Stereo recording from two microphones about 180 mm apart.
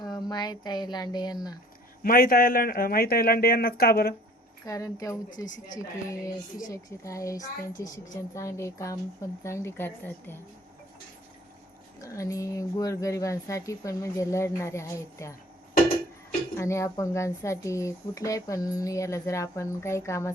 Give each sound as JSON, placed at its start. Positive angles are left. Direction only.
{"t": 0.0, "sound": "speech", "side_deg": 20}
{"t": 2.0, "sound": "speech", "side_deg": 55}
{"t": 4.6, "sound": "speech", "side_deg": 20}
{"t": 11.9, "sound": "speech", "side_deg": 15}
{"t": 16.6, "sound": "speech", "side_deg": 15}